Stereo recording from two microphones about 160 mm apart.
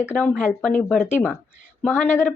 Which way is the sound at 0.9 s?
15° left (ahead or behind).